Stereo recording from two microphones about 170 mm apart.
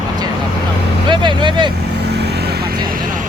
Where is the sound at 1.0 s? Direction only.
30° right (ahead or behind).